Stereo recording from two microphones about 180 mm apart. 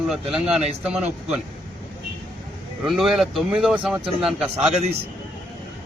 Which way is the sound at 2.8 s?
Centre (ahead or behind).